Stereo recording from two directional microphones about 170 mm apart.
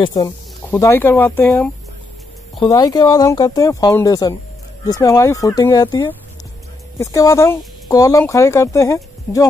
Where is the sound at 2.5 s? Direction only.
25° left (ahead or behind).